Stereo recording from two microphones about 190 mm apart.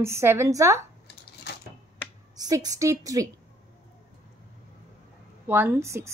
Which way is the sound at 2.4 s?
20° right (ahead or behind).